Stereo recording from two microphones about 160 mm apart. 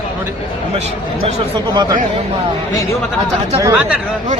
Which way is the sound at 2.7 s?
20° left (ahead or behind).